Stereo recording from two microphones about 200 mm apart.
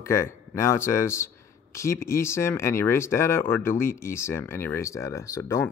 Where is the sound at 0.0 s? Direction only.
15° left (ahead or behind).